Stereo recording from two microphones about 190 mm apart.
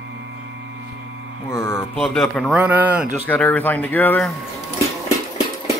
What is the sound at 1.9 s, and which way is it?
Speech, centre (ahead or behind).